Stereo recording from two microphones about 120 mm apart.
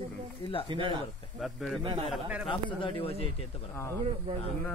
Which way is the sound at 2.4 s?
45° left (ahead or behind).